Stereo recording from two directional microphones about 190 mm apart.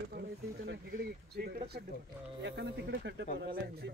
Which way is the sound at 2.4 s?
65° right (ahead or behind).